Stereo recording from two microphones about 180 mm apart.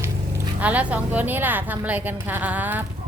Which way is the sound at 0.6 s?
10° right (ahead or behind).